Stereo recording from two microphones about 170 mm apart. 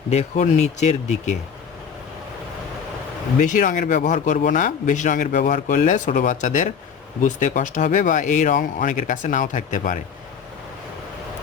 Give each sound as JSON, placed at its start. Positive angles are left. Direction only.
{"t": 0.1, "sound": "speech", "side_deg": 40}
{"t": 3.4, "sound": "speech", "side_deg": 50}